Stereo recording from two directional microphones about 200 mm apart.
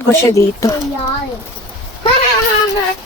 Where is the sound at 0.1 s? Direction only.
15° left (ahead or behind).